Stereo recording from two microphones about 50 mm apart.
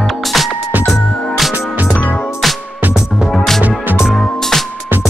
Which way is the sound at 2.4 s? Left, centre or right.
Centre.